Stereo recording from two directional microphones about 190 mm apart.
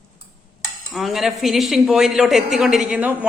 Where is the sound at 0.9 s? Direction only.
Centre (ahead or behind).